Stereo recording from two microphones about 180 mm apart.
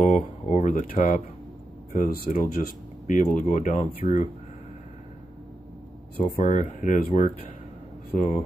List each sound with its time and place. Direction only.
0.0 s a sound: 40° left (ahead or behind)
1.9 s speech: 55° left (ahead or behind)
6.1 s speech: 45° left (ahead or behind)
8.1 s speech: 50° left (ahead or behind)